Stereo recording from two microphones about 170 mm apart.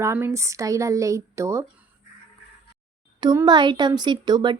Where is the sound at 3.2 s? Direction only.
25° right (ahead or behind).